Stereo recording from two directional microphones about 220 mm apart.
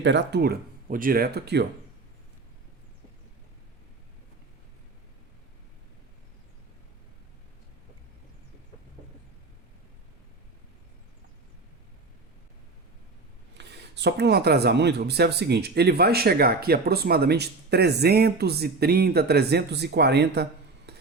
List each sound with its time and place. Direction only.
0.0 s speech: 50° right (ahead or behind)
13.5 s speech: 50° right (ahead or behind)